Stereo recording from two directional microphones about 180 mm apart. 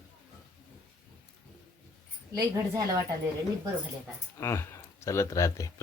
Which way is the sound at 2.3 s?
20° right (ahead or behind).